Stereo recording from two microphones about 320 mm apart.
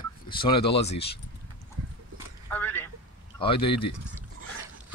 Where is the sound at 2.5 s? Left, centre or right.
Centre.